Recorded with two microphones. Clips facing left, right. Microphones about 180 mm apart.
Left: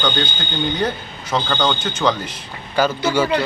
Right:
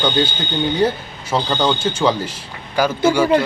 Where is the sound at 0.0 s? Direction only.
10° right (ahead or behind).